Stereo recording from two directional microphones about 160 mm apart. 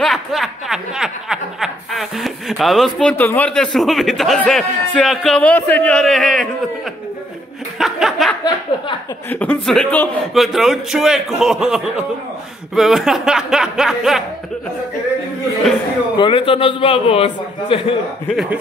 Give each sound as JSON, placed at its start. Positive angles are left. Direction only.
{"t": 0.0, "sound": "snicker", "side_deg": 0}
{"t": 3.3, "sound": "a man's voice", "side_deg": 10}
{"t": 7.8, "sound": "a sound", "side_deg": 0}
{"t": 9.3, "sound": "a man's voice", "side_deg": 10}
{"t": 16.2, "sound": "a man's voice", "side_deg": 35}
{"t": 18.3, "sound": "a man's voice", "side_deg": 0}